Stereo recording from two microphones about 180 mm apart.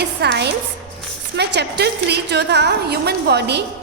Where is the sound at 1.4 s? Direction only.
70° right (ahead or behind).